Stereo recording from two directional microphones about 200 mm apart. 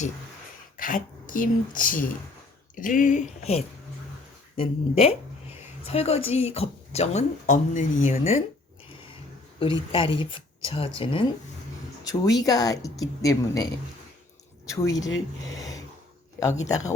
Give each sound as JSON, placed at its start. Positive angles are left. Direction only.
{"t": 0.8, "sound": "speech", "side_deg": 40}
{"t": 9.6, "sound": "speech", "side_deg": 25}
{"t": 14.7, "sound": "speech", "side_deg": 15}
{"t": 15.5, "sound": "gasp", "side_deg": 15}